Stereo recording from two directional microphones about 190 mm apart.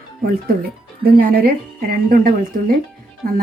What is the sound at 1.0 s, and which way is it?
Speech, 55° right (ahead or behind).